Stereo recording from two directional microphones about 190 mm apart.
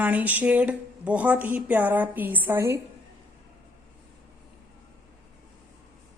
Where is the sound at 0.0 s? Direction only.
10° right (ahead or behind).